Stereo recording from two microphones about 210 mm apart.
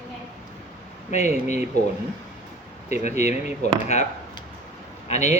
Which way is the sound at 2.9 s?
35° left (ahead or behind).